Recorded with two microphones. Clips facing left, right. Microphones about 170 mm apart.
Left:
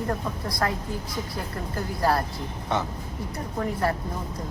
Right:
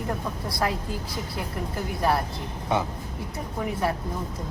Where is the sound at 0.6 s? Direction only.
15° right (ahead or behind).